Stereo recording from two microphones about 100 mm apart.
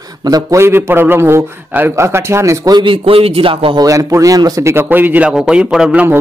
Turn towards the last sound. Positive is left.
turn(degrees=-5)  # may be behind; listen again after turning